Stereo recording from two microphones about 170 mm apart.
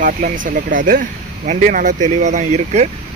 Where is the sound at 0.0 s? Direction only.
55° right (ahead or behind).